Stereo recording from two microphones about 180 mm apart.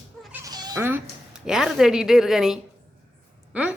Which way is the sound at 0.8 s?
10° right (ahead or behind).